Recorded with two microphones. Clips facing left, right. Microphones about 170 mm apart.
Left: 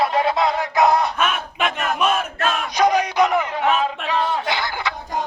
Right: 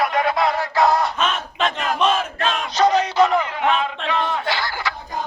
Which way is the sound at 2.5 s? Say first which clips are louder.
Right 1 dB; 10° left (ahead or behind).